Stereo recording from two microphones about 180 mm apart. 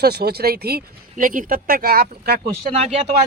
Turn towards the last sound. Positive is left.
turn(degrees=-35)  # may be behind; listen again after turning